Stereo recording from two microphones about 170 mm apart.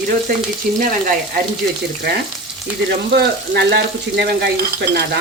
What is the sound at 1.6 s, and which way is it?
Speech, 60° right (ahead or behind).